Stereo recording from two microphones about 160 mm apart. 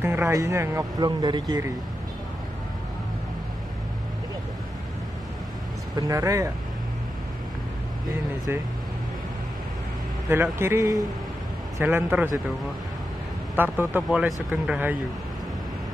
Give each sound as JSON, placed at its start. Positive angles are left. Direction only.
{"t": 0.0, "sound": "speech", "side_deg": -15}
{"t": 5.9, "sound": "speech", "side_deg": -20}
{"t": 10.2, "sound": "speech", "side_deg": -15}
{"t": 13.6, "sound": "speech", "side_deg": -10}